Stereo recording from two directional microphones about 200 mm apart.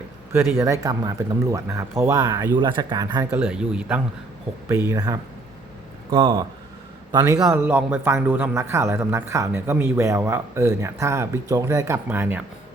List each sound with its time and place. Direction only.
0.6 s speech: 15° right (ahead or behind)
3.2 s speech: 5° right (ahead or behind); by 6.4 s 25° right (ahead or behind)
7.3 s speech: 5° right (ahead or behind)